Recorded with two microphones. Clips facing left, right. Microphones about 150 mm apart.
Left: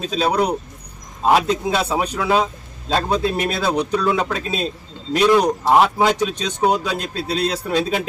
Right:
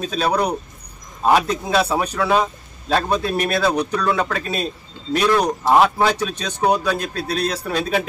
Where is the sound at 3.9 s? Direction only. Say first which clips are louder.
Left 1 dB; 10° left (ahead or behind).